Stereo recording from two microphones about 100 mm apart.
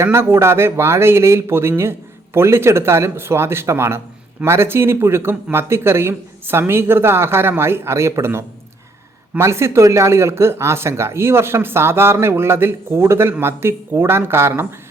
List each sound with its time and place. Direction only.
0.0 s speech: 25° right (ahead or behind)